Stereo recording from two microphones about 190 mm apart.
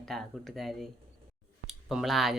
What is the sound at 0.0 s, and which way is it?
Speech, centre (ahead or behind).